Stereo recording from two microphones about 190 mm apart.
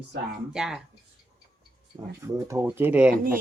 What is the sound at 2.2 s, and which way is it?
Speech, 15° right (ahead or behind).